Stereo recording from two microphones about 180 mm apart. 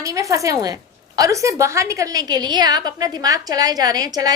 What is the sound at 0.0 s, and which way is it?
A woman's voice, 15° right (ahead or behind).